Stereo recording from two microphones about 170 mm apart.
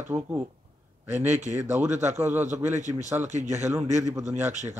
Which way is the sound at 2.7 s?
45° right (ahead or behind).